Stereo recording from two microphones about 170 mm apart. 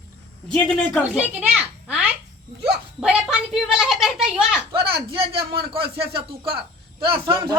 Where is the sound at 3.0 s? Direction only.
5° right (ahead or behind).